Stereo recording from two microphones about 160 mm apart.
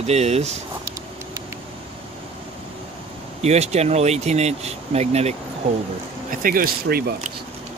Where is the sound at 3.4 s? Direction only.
45° right (ahead or behind).